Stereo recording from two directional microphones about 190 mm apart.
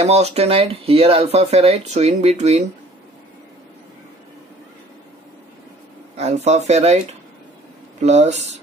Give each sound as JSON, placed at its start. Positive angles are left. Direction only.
{"t": 0.0, "sound": "speech", "side_deg": -35}
{"t": 6.1, "sound": "speech", "side_deg": -35}
{"t": 8.0, "sound": "speech", "side_deg": -35}